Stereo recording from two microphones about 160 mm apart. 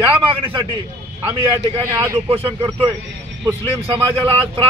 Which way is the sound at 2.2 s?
35° right (ahead or behind).